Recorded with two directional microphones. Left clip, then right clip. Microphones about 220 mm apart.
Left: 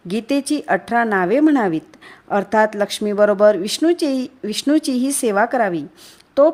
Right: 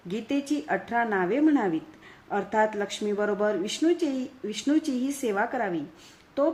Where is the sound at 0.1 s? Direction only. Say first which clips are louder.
Left 9 dB; 50° left (ahead or behind).